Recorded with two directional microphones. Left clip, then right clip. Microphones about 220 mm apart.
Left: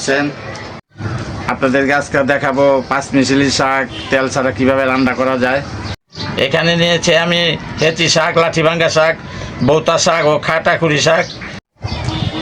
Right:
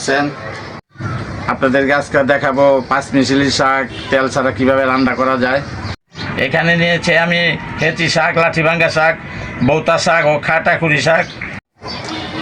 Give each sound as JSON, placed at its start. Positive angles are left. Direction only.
{"t": 0.0, "sound": "a man's voice", "side_deg": 5}
{"t": 1.5, "sound": "a man's voice", "side_deg": 5}
{"t": 6.3, "sound": "speech", "side_deg": 20}